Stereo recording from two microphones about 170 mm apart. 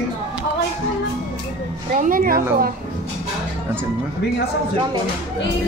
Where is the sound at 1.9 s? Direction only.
50° right (ahead or behind).